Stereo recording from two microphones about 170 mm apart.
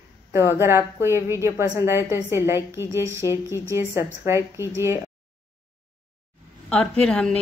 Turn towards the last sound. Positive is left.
turn(degrees=5)  # may be behind; listen again after turning